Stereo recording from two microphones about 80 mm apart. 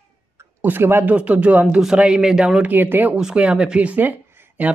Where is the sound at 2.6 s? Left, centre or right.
Right.